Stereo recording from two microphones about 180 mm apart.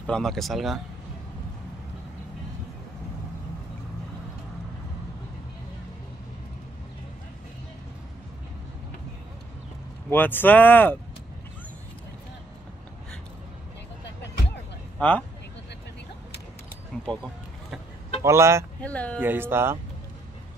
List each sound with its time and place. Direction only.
0.0 s speech: 5° left (ahead or behind)
10.1 s speech: 10° left (ahead or behind)
15.0 s speech: 10° left (ahead or behind)
16.9 s a sound: 5° left (ahead or behind)
18.2 s speech: 15° right (ahead or behind)
18.8 s speech: 5° left (ahead or behind)
19.1 s speech: 10° right (ahead or behind)